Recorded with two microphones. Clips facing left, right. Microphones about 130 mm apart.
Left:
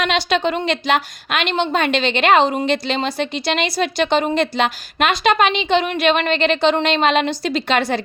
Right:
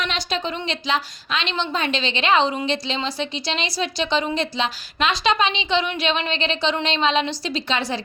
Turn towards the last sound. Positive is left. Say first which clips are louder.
# left 6 dB
turn(degrees=60)  # may be behind; listen again after turning